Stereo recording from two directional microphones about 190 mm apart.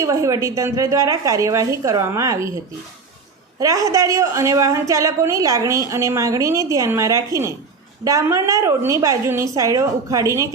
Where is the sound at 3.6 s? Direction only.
15° right (ahead or behind).